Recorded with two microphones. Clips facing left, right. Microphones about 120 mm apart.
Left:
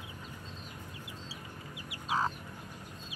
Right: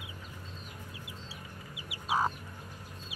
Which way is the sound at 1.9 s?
10° right (ahead or behind).